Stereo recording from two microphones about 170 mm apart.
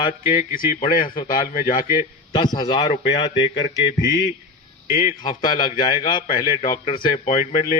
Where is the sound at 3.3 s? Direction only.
90° left.